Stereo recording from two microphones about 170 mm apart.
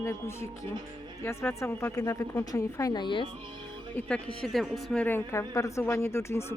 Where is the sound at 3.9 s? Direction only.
5° left (ahead or behind).